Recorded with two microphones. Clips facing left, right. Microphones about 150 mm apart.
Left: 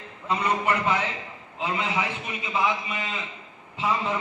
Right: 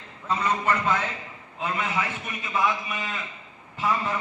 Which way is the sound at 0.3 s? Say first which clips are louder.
Even; 15° left (ahead or behind).